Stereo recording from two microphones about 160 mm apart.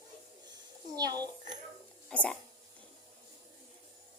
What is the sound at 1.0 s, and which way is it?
Speech, 25° right (ahead or behind).